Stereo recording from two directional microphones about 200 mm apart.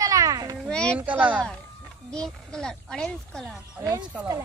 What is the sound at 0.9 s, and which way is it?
Speech, 5° right (ahead or behind).